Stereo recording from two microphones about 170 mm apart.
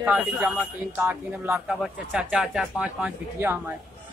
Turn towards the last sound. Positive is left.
turn(degrees=-10)  # may be behind; listen again after turning